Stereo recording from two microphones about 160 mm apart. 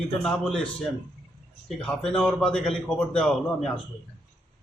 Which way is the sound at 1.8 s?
5° left (ahead or behind).